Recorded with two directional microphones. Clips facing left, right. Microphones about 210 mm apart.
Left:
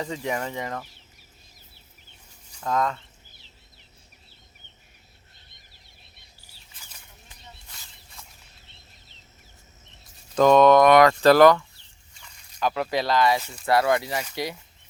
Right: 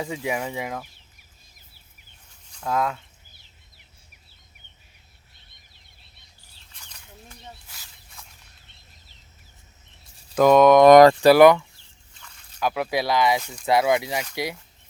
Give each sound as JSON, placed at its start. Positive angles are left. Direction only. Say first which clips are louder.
{"t": 0.0, "sound": "speech", "louder": "right 1 dB", "side_deg": -10}
{"t": 2.6, "sound": "speech", "louder": "even", "side_deg": -5}
{"t": 6.7, "sound": "a sound", "louder": "right 1 dB", "side_deg": 5}
{"t": 10.3, "sound": "speech", "louder": "right 1 dB", "side_deg": -10}
{"t": 10.8, "sound": "speech", "louder": "right 5 dB", "side_deg": -35}
{"t": 11.2, "sound": "speech", "louder": "right 2 dB", "side_deg": -10}
{"t": 13.4, "sound": "speech", "louder": "right 2 dB", "side_deg": 0}
{"t": 13.7, "sound": "speech", "louder": "right 1 dB", "side_deg": -15}